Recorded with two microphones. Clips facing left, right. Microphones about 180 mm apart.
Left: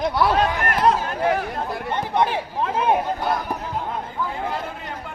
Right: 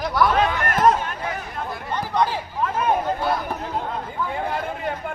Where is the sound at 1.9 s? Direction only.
25° left (ahead or behind).